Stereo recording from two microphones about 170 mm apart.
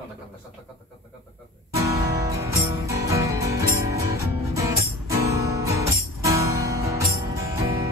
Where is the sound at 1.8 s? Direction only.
20° right (ahead or behind).